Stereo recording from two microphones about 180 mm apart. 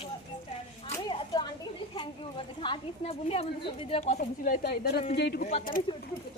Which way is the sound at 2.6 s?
25° left (ahead or behind).